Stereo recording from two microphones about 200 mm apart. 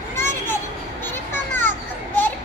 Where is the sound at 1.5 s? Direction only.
10° left (ahead or behind).